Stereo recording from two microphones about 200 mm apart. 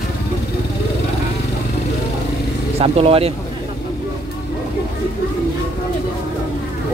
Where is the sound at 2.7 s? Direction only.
30° right (ahead or behind).